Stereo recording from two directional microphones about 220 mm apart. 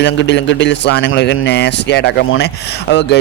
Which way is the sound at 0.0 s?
50° left (ahead or behind).